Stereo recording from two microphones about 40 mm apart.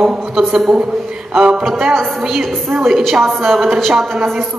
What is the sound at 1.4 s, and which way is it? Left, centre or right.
Speech, right.